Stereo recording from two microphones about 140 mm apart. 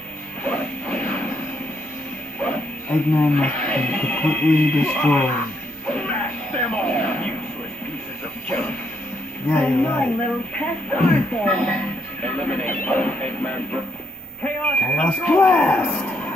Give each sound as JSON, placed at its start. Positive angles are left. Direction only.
{"t": 0.5, "sound": "music", "side_deg": 10}
{"t": 2.4, "sound": "speech", "side_deg": 10}
{"t": 5.9, "sound": "music", "side_deg": 5}
{"t": 6.7, "sound": "a sound", "side_deg": 10}
{"t": 8.5, "sound": "a sound", "side_deg": 10}
{"t": 9.5, "sound": "speech", "side_deg": 10}